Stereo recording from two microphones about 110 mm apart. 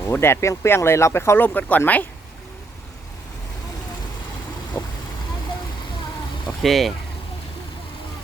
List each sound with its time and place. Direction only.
0.0 s speech: 20° left (ahead or behind)
4.7 s vehicle: 20° left (ahead or behind)
6.6 s speech: centre (ahead or behind)